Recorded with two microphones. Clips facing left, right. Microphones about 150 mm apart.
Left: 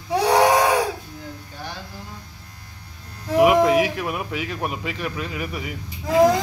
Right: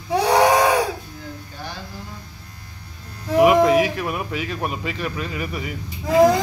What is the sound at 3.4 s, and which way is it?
Speech, 15° left (ahead or behind).